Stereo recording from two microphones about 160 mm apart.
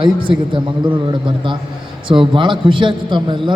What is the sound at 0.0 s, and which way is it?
Speech, 30° right (ahead or behind).